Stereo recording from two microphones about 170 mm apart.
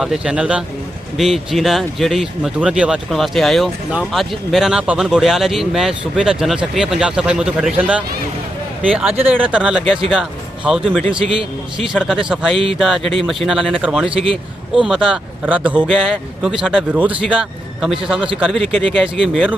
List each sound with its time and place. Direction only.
0.0 s speech: 5° right (ahead or behind)
11.0 s a man's voice: 30° right (ahead or behind)
11.8 s speech: centre (ahead or behind)
18.7 s speech: 5° left (ahead or behind)